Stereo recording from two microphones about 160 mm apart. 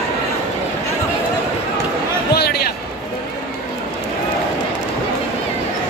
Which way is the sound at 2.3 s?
85° left.